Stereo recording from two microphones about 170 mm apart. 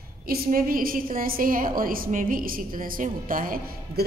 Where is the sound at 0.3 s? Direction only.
55° right (ahead or behind).